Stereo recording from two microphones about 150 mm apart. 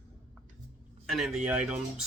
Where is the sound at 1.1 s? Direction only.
Centre (ahead or behind).